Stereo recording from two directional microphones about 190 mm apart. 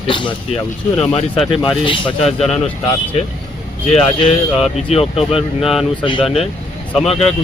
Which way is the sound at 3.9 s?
30° left (ahead or behind).